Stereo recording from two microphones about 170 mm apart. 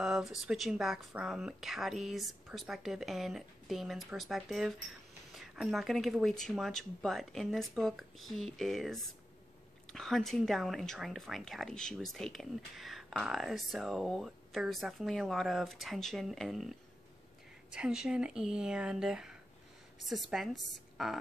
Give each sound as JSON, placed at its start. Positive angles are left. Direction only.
{"t": 0.0, "sound": "speech", "side_deg": -5}